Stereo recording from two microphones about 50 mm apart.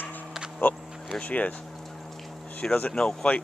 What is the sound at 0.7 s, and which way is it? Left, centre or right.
Speech, left.